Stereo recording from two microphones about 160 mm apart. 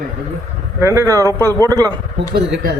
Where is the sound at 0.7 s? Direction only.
15° right (ahead or behind).